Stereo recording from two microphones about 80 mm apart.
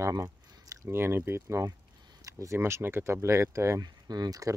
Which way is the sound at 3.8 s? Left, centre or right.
Right.